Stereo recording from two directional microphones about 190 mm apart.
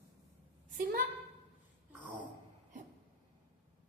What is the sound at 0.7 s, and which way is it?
Speech, 50° right (ahead or behind).